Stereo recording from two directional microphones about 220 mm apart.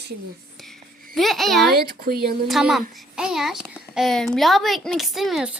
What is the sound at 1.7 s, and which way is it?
Speech, 45° right (ahead or behind).